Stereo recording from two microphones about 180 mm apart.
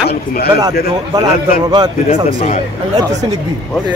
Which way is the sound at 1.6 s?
20° right (ahead or behind).